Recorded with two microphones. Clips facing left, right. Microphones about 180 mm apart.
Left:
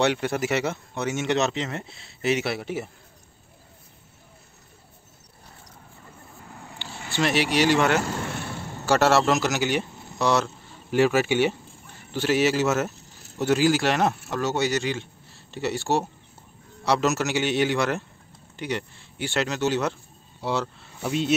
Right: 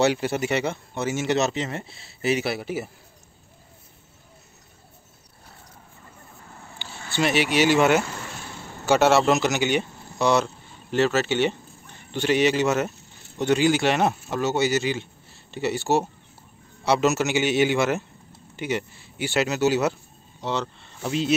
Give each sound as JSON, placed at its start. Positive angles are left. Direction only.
{"t": 0.0, "sound": "speech", "side_deg": -5}
{"t": 7.1, "sound": "speech", "side_deg": 0}
{"t": 8.1, "sound": "vehicle", "side_deg": 60}
{"t": 8.8, "sound": "speech", "side_deg": 0}
{"t": 11.0, "sound": "speech", "side_deg": 10}
{"t": 20.3, "sound": "speech", "side_deg": 5}